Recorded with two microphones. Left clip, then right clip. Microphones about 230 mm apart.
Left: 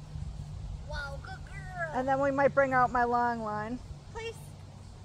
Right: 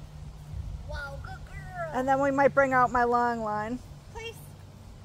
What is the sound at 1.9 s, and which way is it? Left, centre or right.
Speech, right.